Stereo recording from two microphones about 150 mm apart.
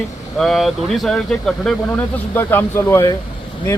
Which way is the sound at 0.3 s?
Centre (ahead or behind).